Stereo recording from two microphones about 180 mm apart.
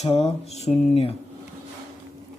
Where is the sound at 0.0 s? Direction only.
35° left (ahead or behind).